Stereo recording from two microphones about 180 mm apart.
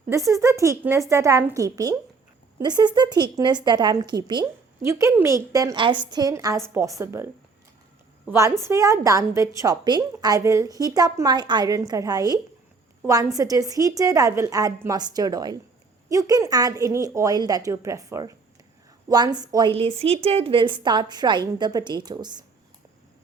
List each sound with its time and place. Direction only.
0.3 s a woman's voice: 15° right (ahead or behind)
8.3 s a woman's voice: 15° right (ahead or behind)